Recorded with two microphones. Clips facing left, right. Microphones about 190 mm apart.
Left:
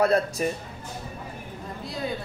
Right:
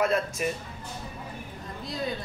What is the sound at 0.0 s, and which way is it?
Speech, 35° left (ahead or behind).